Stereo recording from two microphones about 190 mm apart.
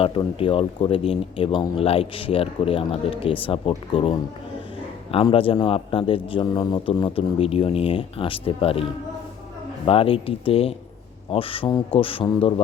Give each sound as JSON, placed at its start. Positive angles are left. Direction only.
{"t": 0.0, "sound": "speech", "side_deg": 30}
{"t": 5.1, "sound": "speech", "side_deg": 30}